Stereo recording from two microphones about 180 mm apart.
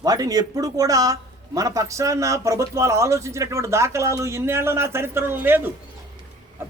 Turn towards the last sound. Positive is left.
turn(degrees=-10)  # may be behind; listen again after turning